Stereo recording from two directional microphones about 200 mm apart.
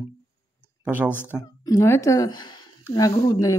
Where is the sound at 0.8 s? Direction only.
10° right (ahead or behind).